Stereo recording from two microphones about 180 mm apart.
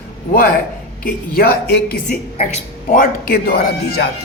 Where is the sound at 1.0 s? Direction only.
60° left (ahead or behind).